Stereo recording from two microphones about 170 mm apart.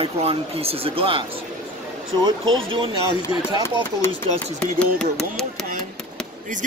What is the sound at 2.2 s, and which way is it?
Speech, 30° right (ahead or behind).